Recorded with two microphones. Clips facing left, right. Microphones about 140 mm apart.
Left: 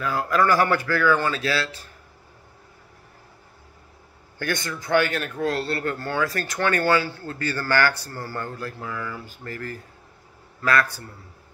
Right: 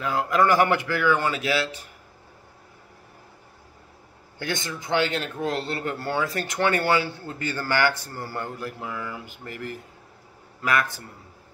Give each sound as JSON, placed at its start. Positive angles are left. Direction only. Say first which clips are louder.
{"t": 0.0, "sound": "a man's voice", "louder": "even", "side_deg": -20}
{"t": 4.4, "sound": "a man's voice", "louder": "left 2 dB", "side_deg": -20}